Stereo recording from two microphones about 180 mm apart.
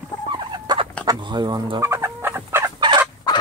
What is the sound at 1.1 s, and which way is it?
Speech, 25° right (ahead or behind).